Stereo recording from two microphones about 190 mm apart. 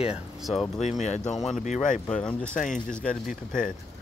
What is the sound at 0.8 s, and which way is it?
Speech, 40° left (ahead or behind).